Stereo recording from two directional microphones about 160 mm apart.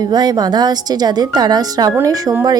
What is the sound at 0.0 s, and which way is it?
Speech, 25° right (ahead or behind).